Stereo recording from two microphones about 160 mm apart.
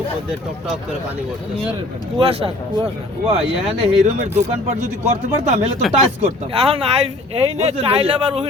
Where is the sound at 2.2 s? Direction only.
35° right (ahead or behind).